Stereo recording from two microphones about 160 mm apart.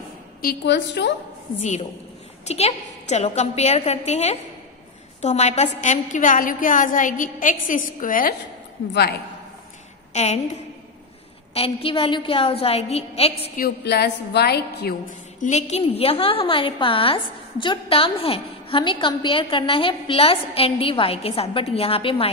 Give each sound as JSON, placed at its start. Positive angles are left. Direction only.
{"t": 0.4, "sound": "a woman's voice", "side_deg": 80}
{"t": 2.4, "sound": "a woman's voice", "side_deg": 40}
{"t": 8.9, "sound": "a woman's voice", "side_deg": 90}
{"t": 10.1, "sound": "a woman's voice", "side_deg": 45}
{"t": 13.6, "sound": "a woman's voice", "side_deg": 90}
{"t": 15.0, "sound": "a woman's voice", "side_deg": 50}